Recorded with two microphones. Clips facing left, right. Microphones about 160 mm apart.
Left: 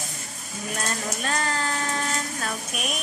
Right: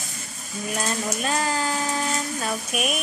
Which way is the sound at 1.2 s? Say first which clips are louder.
Right 2 dB; 10° right (ahead or behind).